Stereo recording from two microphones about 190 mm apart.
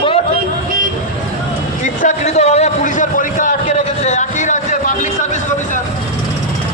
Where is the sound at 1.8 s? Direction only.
40° left (ahead or behind).